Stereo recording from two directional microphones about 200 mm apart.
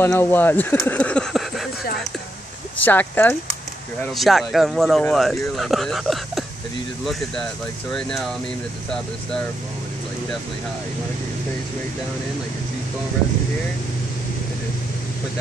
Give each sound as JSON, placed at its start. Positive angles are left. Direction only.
{"t": 0.0, "sound": "speech", "side_deg": 10}
{"t": 2.8, "sound": "speech", "side_deg": 10}
{"t": 7.9, "sound": "speech", "side_deg": 0}